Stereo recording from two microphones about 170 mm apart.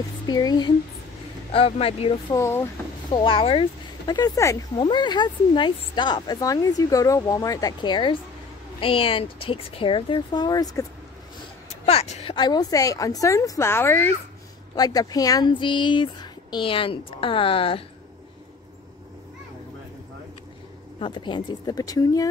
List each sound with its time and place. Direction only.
0.3 s speech: 25° left (ahead or behind)
2.3 s speech: 15° left (ahead or behind)
3.1 s speech: 30° left (ahead or behind)
4.1 s speech: 20° left (ahead or behind)
11.7 s a sound: 35° left (ahead or behind)
12.4 s speech: 25° left (ahead or behind)
21.0 s speech: 30° left (ahead or behind)